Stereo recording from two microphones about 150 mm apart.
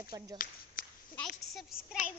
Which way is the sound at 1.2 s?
Centre (ahead or behind).